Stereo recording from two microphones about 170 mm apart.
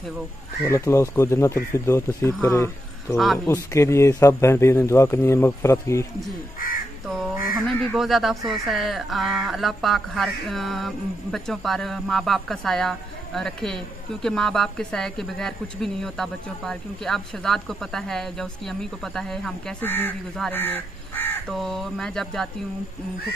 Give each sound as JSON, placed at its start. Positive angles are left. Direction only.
{"t": 0.7, "sound": "speech", "side_deg": 15}
{"t": 7.5, "sound": "speech", "side_deg": 0}